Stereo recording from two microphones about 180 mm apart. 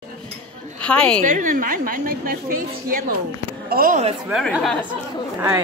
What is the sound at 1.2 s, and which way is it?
A woman's voice, 50° right (ahead or behind).